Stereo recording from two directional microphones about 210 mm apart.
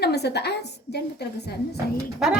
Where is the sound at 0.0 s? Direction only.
50° left (ahead or behind).